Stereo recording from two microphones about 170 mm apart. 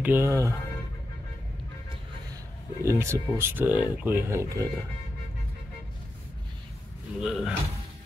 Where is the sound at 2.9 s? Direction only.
15° right (ahead or behind).